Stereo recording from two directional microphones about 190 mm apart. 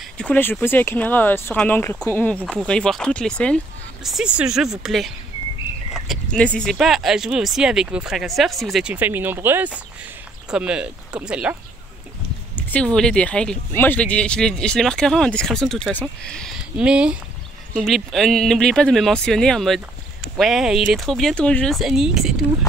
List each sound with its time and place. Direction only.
0.2 s speech: 10° left (ahead or behind)
12.7 s speech: 5° left (ahead or behind)